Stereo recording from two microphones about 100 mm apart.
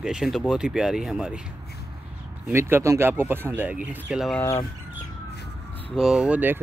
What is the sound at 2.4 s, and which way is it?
Speech, 25° right (ahead or behind).